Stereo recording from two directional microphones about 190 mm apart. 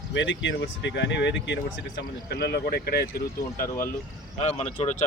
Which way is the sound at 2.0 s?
60° left (ahead or behind).